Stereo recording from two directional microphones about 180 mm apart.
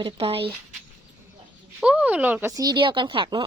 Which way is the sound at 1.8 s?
5° right (ahead or behind).